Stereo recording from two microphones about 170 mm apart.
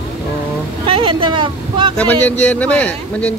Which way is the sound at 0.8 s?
30° right (ahead or behind).